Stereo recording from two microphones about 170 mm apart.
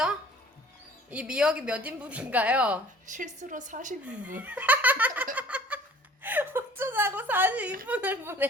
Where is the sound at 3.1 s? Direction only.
50° right (ahead or behind).